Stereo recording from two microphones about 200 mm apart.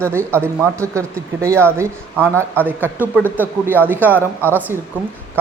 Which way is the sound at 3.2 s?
10° left (ahead or behind).